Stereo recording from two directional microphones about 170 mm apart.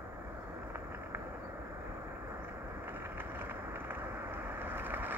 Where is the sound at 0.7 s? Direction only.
15° right (ahead or behind).